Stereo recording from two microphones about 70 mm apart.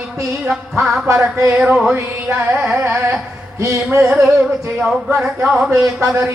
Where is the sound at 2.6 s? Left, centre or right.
Right.